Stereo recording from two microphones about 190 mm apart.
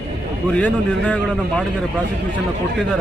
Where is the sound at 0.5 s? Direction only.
5° left (ahead or behind).